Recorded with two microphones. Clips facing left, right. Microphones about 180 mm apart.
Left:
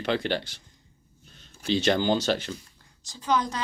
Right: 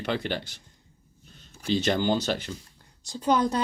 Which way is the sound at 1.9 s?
5° right (ahead or behind).